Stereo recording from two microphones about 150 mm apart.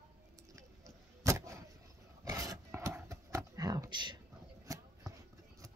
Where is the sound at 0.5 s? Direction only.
20° right (ahead or behind).